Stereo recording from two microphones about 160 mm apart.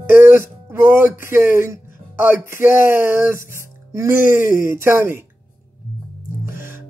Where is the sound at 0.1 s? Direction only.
15° right (ahead or behind).